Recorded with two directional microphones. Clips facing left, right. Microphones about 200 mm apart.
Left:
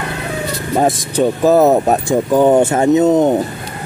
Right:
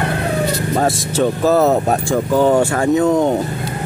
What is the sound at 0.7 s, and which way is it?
Speech, 15° left (ahead or behind).